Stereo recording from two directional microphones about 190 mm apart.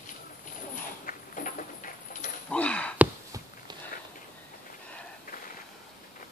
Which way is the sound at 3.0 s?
15° right (ahead or behind).